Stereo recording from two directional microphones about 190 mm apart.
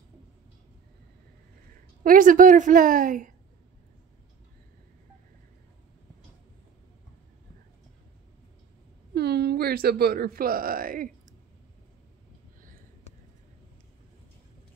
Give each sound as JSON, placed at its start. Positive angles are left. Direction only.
{"t": 2.0, "sound": "a woman's voice", "side_deg": -45}
{"t": 9.1, "sound": "speech", "side_deg": -60}